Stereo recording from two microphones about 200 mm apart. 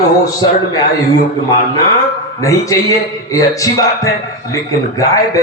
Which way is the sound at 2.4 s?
15° left (ahead or behind).